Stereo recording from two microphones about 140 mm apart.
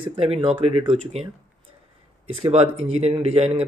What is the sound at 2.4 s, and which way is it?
Speech, 50° right (ahead or behind).